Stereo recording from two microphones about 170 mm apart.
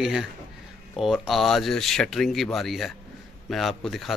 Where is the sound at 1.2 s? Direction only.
Centre (ahead or behind).